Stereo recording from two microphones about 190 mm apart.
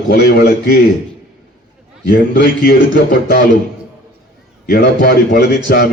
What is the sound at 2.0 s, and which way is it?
A man's voice, 55° left (ahead or behind).